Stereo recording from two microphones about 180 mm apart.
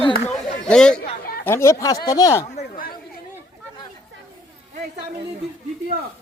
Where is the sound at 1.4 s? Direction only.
15° left (ahead or behind).